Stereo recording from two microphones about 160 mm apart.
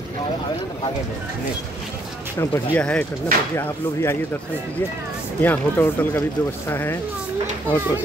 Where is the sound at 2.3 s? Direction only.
15° left (ahead or behind).